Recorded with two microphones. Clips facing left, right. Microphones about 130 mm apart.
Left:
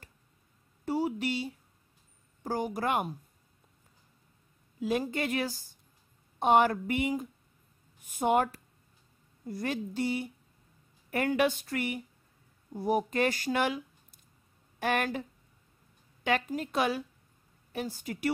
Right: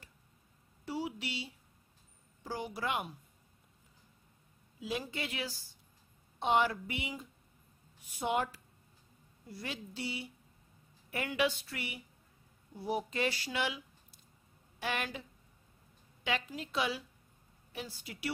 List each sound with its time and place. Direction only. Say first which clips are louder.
0.8 s a sound: left 8 dB; 45° left (ahead or behind)
2.4 s speech: left 6 dB; 45° left (ahead or behind)
4.7 s speech: left 8 dB; 50° left (ahead or behind)
16.3 s speech: left 7 dB; 50° left (ahead or behind)